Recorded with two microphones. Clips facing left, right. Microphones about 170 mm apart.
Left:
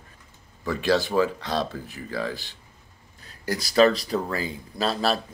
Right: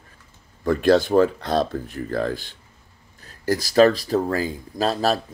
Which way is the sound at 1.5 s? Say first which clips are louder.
Right 6 dB; 5° left (ahead or behind).